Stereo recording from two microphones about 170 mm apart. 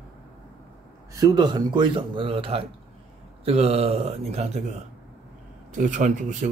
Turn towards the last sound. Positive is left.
turn(degrees=-45)  # may be behind; listen again after turning